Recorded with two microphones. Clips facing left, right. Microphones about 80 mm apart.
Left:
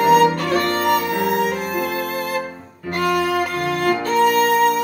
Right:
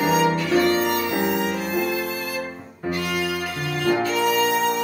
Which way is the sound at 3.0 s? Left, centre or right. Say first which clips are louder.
Left 11 dB; left.